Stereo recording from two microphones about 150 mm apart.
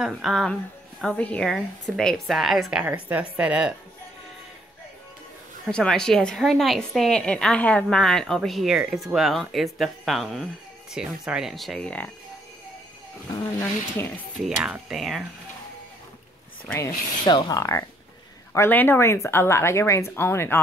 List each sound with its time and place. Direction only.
0.0 s a woman's voice: centre (ahead or behind)
2.8 s a woman's voice: 10° right (ahead or behind)
5.7 s a woman's voice: 5° left (ahead or behind)
13.4 s speech: 15° left (ahead or behind)
14.4 s a woman's voice: 5° right (ahead or behind)
17.3 s speech: 25° left (ahead or behind)